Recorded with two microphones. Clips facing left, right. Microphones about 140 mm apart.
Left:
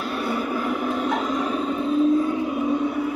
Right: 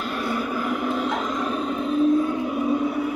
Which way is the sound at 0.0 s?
10° left (ahead or behind).